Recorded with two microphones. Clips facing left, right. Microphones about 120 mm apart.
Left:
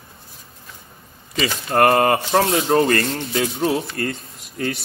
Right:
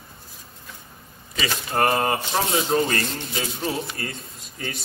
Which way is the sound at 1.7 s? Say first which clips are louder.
Left 6 dB; 60° left (ahead or behind).